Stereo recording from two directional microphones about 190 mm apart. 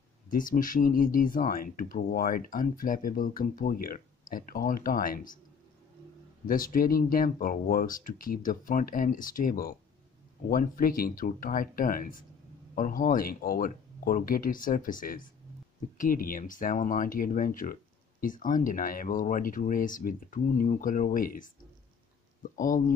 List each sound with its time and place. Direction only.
0.3 s speech: 45° left (ahead or behind)
6.4 s speech: 45° left (ahead or behind)